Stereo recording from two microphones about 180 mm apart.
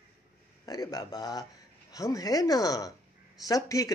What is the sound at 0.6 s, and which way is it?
Speech, 20° left (ahead or behind).